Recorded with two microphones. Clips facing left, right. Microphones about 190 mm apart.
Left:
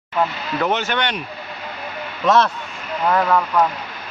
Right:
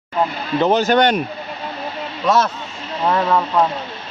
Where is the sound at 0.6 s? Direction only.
35° right (ahead or behind).